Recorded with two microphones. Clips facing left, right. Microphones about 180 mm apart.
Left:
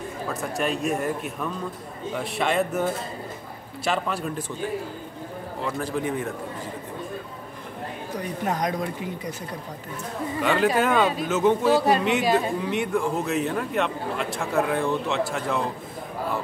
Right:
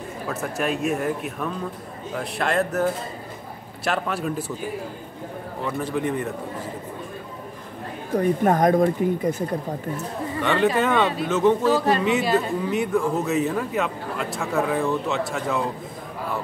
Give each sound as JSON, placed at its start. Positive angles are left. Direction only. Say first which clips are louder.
{"t": 0.3, "sound": "a man's voice", "louder": "right 1 dB", "side_deg": 0}
{"t": 5.6, "sound": "a man's voice", "louder": "right 2 dB", "side_deg": 0}
{"t": 8.1, "sound": "speech", "louder": "right 9 dB", "side_deg": -50}
{"t": 10.4, "sound": "a man's voice", "louder": "right 1 dB", "side_deg": 5}
{"t": 11.6, "sound": "speech", "louder": "even", "side_deg": 15}
{"t": 12.7, "sound": "a man's voice", "louder": "right 4 dB", "side_deg": 0}